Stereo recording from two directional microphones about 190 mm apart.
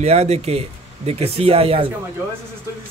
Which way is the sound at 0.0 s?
35° right (ahead or behind).